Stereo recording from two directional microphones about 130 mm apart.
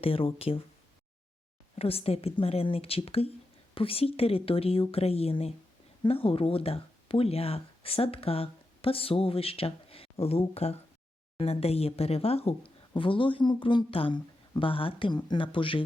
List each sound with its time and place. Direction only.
0.0 s speech: 45° left (ahead or behind)
1.8 s speech: 50° left (ahead or behind)
12.9 s speech: 40° left (ahead or behind)